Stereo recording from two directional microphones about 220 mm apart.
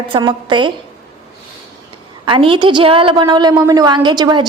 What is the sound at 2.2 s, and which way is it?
A woman's voice, 20° right (ahead or behind).